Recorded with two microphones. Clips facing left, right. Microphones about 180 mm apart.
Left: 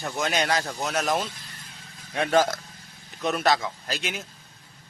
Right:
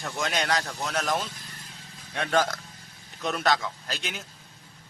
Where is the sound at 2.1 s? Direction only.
10° left (ahead or behind).